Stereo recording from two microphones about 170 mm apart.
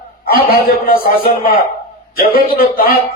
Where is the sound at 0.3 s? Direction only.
60° left (ahead or behind).